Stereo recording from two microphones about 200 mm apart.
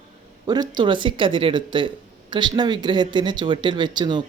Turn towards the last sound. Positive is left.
turn(degrees=-25)  # may be behind; listen again after turning